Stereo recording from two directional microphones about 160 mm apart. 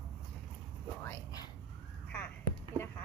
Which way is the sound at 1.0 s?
25° left (ahead or behind).